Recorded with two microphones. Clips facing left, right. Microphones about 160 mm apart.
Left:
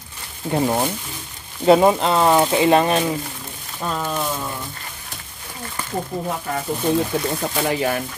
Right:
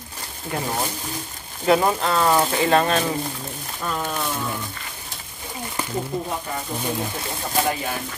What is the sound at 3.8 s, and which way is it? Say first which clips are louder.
Speech: left 2 dB; 25° left (ahead or behind).